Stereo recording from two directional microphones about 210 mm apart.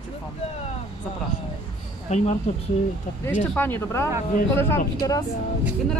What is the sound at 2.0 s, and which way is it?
Speech, 30° left (ahead or behind).